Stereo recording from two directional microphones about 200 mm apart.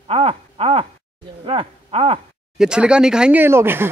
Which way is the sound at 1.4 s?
25° right (ahead or behind).